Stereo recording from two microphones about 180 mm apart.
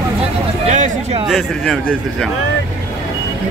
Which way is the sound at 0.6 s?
45° right (ahead or behind).